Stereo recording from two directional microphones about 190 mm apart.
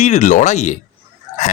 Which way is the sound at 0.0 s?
40° left (ahead or behind).